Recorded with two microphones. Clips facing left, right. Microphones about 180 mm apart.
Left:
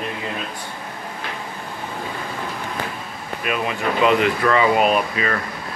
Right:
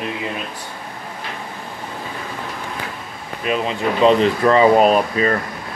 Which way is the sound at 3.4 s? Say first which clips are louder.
Right 3 dB; 25° right (ahead or behind).